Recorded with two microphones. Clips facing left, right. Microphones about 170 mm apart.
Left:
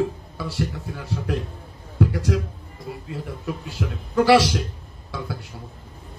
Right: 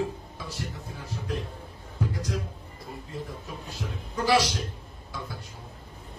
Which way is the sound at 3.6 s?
80° left.